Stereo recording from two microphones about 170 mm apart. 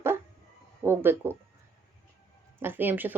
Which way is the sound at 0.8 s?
10° right (ahead or behind).